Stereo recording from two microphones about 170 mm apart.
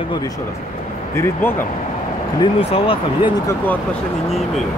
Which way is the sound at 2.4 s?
30° left (ahead or behind).